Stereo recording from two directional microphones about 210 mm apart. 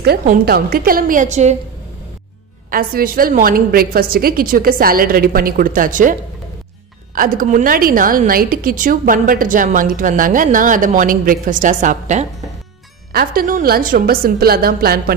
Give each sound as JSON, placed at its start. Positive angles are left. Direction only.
{"t": 0.0, "sound": "a woman's voice", "side_deg": -45}
{"t": 2.7, "sound": "a woman's voice", "side_deg": -45}
{"t": 7.2, "sound": "a woman's voice", "side_deg": -40}